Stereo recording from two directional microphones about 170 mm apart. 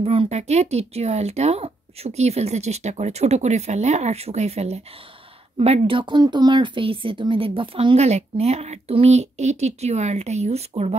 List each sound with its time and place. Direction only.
0.0 s speech: 35° right (ahead or behind)